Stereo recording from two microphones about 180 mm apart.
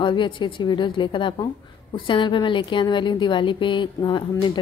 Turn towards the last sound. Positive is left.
turn(degrees=25)  # may be behind; listen again after turning